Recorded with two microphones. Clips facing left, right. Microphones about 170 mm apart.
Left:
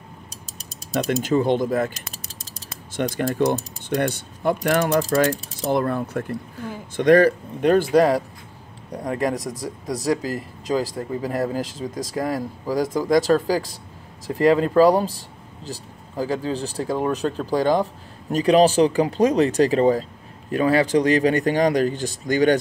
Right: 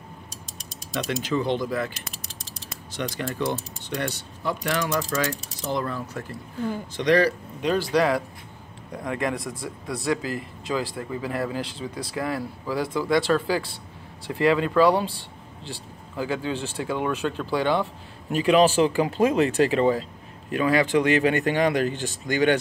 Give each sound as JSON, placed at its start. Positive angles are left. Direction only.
{"t": 0.9, "sound": "speech", "side_deg": 45}